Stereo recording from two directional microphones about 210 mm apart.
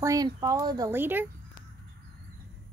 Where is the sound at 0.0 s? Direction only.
15° right (ahead or behind).